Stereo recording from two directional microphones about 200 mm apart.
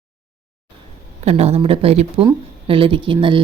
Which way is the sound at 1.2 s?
30° right (ahead or behind).